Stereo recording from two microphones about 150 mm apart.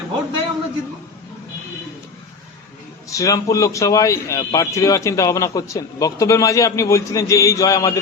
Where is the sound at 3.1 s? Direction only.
20° left (ahead or behind).